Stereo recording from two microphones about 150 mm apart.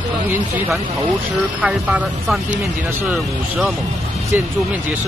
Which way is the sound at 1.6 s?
10° right (ahead or behind).